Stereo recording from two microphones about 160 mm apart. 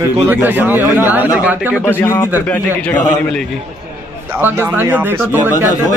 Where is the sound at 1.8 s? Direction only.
15° left (ahead or behind).